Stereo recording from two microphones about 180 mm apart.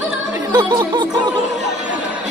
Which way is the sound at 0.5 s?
25° right (ahead or behind).